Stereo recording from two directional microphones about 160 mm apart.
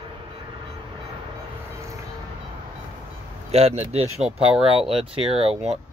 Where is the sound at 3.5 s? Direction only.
40° right (ahead or behind).